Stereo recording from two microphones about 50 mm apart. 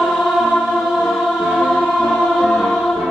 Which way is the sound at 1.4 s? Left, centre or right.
Centre.